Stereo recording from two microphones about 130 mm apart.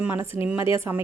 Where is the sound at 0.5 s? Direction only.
40° left (ahead or behind).